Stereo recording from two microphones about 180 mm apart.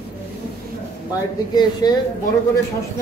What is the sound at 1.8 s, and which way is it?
Speech, 25° left (ahead or behind).